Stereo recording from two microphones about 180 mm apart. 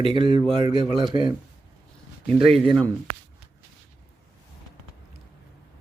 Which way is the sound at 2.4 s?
30° right (ahead or behind).